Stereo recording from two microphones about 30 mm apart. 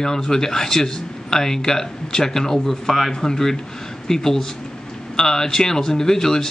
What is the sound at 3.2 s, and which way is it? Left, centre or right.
Speech, centre.